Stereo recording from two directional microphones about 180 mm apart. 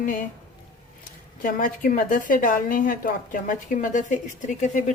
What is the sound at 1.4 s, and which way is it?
A woman's voice, 50° left (ahead or behind).